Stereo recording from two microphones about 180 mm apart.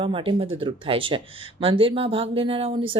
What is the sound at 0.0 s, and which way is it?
Speech, 30° right (ahead or behind).